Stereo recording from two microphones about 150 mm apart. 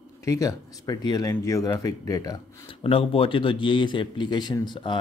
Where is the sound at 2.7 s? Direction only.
40° left (ahead or behind).